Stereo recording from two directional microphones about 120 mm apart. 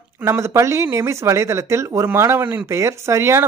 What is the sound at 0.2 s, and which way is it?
A woman's voice, 25° right (ahead or behind).